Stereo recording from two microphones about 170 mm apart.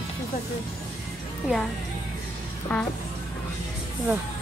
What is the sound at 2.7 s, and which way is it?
Music, 5° left (ahead or behind).